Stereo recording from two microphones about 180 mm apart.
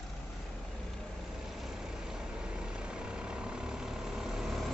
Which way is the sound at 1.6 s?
Centre (ahead or behind).